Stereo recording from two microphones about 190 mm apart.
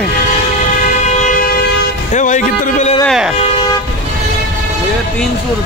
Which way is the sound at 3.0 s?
Centre (ahead or behind).